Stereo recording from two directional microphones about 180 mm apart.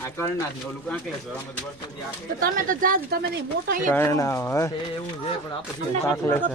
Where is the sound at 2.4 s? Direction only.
50° right (ahead or behind).